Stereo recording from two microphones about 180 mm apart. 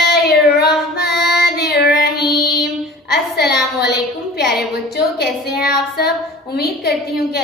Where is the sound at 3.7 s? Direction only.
65° left (ahead or behind).